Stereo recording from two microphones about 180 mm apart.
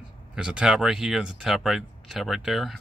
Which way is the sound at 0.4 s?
5° right (ahead or behind).